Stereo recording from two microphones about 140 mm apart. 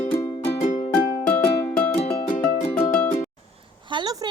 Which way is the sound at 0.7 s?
55° left (ahead or behind).